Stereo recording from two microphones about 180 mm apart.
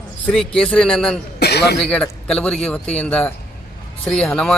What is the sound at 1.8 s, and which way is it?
Speech, 5° left (ahead or behind).